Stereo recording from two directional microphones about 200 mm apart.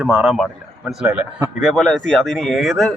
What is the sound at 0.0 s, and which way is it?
A man's voice, 5° right (ahead or behind).